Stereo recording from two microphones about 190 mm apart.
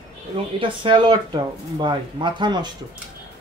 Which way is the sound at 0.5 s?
25° right (ahead or behind).